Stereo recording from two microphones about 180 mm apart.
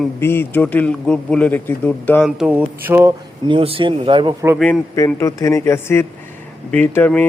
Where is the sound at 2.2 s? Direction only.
5° right (ahead or behind).